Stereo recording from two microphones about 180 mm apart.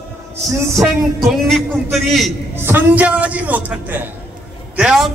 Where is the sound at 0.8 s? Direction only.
Centre (ahead or behind).